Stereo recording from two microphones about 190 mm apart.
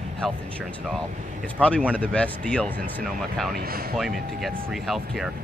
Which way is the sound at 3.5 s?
50° right (ahead or behind).